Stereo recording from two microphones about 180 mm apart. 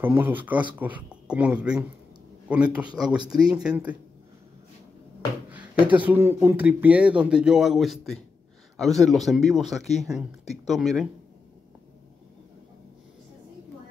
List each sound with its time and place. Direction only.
0.0 s speech: 10° right (ahead or behind)
3.3 s speech: 20° right (ahead or behind)
3.6 s speech: 5° right (ahead or behind)
5.9 s speech: 10° right (ahead or behind)